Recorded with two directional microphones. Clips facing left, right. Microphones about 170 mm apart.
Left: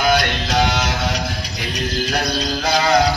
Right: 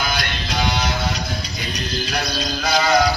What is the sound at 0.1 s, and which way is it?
Music, 75° left (ahead or behind).